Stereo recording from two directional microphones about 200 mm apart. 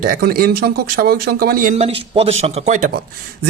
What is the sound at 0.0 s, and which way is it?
Speech, 45° right (ahead or behind).